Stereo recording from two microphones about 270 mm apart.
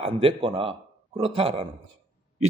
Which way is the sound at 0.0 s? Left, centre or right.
Centre.